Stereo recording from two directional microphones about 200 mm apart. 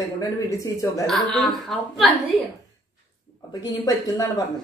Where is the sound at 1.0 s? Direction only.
Centre (ahead or behind).